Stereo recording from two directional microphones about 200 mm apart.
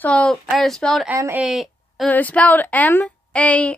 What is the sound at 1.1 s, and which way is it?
Speech, 10° right (ahead or behind).